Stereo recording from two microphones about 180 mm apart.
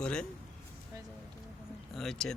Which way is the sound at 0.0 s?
5° left (ahead or behind).